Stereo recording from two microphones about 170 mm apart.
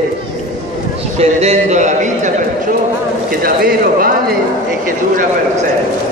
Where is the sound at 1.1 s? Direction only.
40° right (ahead or behind).